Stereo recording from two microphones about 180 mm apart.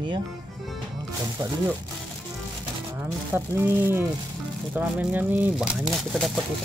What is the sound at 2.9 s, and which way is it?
Speech, 10° right (ahead or behind).